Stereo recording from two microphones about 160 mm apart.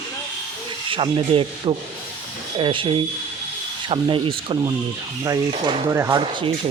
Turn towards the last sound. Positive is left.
turn(degrees=-35)  # may be behind; listen again after turning